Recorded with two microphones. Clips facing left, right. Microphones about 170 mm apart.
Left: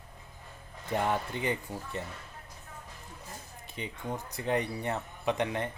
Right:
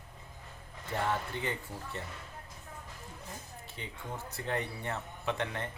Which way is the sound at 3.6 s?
15° left (ahead or behind).